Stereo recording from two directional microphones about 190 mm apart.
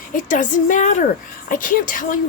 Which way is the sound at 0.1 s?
45° left (ahead or behind).